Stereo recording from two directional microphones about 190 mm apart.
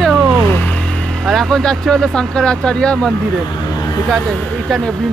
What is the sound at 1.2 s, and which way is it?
Speech, centre (ahead or behind).